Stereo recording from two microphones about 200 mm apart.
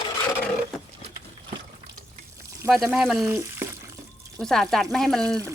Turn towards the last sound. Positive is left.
turn(degrees=5)  # may be behind; listen again after turning